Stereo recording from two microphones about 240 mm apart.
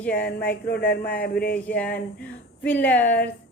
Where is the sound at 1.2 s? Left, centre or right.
Left.